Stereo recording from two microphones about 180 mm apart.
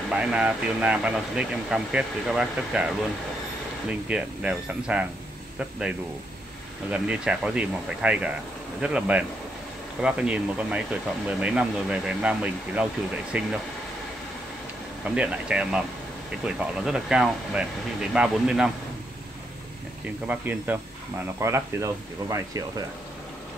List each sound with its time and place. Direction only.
0.1 s speech: 5° right (ahead or behind)
4.1 s speech: 5° right (ahead or behind)
15.1 s speech: 5° right (ahead or behind)
20.2 s speech: 10° right (ahead or behind)